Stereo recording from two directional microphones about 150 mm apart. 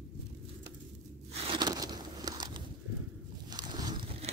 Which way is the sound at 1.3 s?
30° right (ahead or behind).